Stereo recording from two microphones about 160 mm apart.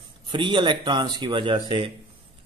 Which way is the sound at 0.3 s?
30° right (ahead or behind).